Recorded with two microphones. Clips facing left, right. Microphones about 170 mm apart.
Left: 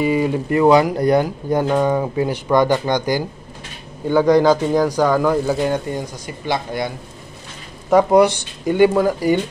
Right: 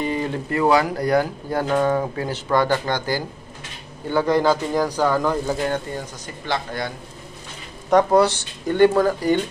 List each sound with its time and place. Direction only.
0.0 s speech: 10° left (ahead or behind)
7.9 s speech: 15° left (ahead or behind)